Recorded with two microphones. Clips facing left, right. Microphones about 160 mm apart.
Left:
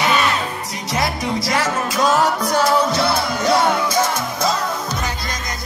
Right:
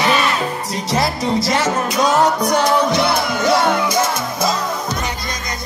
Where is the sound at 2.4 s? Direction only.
15° right (ahead or behind).